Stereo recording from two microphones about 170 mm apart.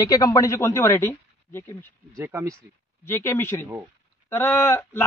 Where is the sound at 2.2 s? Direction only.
15° right (ahead or behind).